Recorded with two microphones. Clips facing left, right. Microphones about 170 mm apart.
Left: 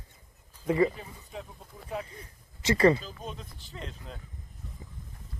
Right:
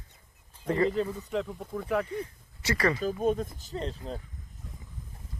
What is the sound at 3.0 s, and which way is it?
Speech, 50° right (ahead or behind).